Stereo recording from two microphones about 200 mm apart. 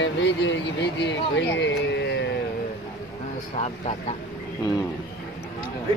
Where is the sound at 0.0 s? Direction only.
65° left (ahead or behind).